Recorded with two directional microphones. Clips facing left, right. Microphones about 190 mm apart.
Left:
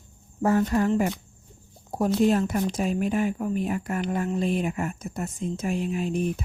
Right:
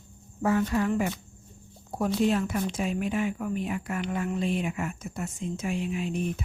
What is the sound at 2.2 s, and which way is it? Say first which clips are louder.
Speech: left 3 dB; 40° left (ahead or behind).